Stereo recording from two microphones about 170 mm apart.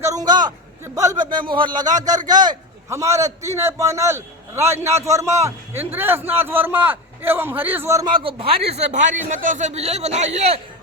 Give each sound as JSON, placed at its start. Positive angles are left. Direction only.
{"t": 0.0, "sound": "a sound", "side_deg": -20}
{"t": 0.9, "sound": "a man's voice", "side_deg": -20}
{"t": 8.2, "sound": "a man's voice", "side_deg": -30}